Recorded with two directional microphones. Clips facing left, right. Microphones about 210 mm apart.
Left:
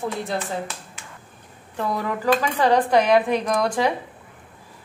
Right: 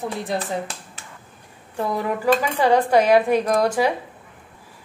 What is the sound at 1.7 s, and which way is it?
A woman's voice, 10° right (ahead or behind).